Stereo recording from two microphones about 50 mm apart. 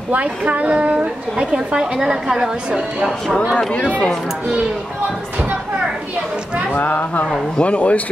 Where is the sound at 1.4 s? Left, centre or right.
Centre.